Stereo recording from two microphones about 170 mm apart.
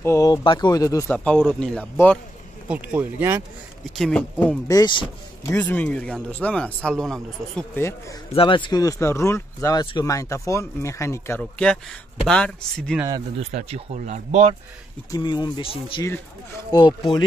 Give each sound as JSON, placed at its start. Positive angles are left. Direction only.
{"t": 0.0, "sound": "speech", "side_deg": 20}
{"t": 1.1, "sound": "speech", "side_deg": 10}
{"t": 2.7, "sound": "speech", "side_deg": -10}
{"t": 3.9, "sound": "speech", "side_deg": 5}
{"t": 4.6, "sound": "speech", "side_deg": 25}
{"t": 5.5, "sound": "speech", "side_deg": 10}
{"t": 8.3, "sound": "speech", "side_deg": 30}
{"t": 13.4, "sound": "speech", "side_deg": -40}
{"t": 15.0, "sound": "speech", "side_deg": 25}